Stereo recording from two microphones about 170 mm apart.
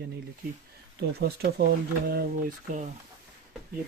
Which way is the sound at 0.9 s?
70° right (ahead or behind).